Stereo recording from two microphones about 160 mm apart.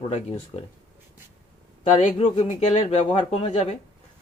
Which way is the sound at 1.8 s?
40° left (ahead or behind).